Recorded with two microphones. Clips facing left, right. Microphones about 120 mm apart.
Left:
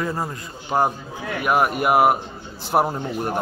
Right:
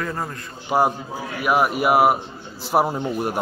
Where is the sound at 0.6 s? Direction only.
5° right (ahead or behind).